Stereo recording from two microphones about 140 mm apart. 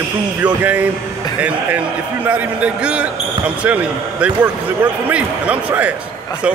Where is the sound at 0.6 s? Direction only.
10° right (ahead or behind).